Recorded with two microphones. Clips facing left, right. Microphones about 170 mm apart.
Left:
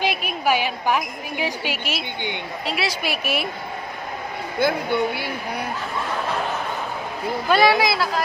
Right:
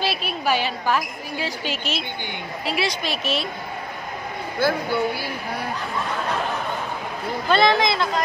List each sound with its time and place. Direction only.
0.0 s a woman's voice: 15° left (ahead or behind)
4.6 s a woman's voice: 20° left (ahead or behind)
7.4 s a woman's voice: 10° left (ahead or behind)